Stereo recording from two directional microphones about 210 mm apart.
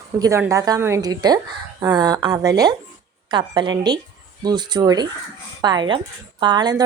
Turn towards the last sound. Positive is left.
turn(degrees=-20)  # may be behind; listen again after turning